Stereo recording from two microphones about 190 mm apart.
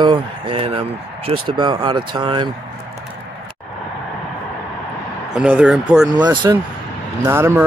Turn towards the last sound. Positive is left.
turn(degrees=-15)  # may be behind; listen again after turning